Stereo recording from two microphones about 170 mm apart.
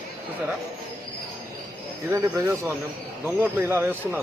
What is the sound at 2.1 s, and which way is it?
Speech, 15° right (ahead or behind).